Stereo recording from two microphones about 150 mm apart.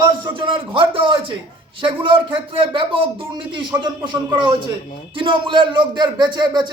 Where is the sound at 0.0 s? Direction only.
30° right (ahead or behind).